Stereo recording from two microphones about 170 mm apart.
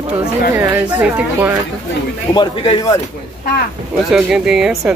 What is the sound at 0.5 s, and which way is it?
Speech, 10° right (ahead or behind).